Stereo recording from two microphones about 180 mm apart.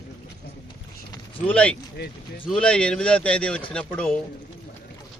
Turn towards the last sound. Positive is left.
turn(degrees=5)  # may be behind; listen again after turning